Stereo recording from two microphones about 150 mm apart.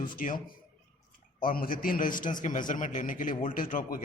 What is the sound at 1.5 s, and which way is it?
A man's voice, 70° left (ahead or behind).